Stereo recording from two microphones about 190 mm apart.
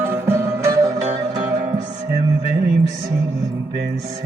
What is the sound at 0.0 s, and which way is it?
Music, 10° right (ahead or behind).